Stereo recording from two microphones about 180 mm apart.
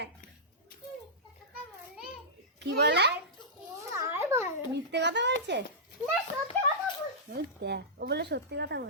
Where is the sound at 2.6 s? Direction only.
70° right (ahead or behind).